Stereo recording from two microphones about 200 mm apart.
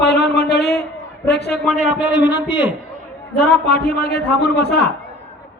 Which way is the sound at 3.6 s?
50° left (ahead or behind).